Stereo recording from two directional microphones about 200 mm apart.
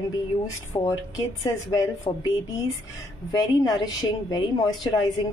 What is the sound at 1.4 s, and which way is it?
Speech, 20° left (ahead or behind).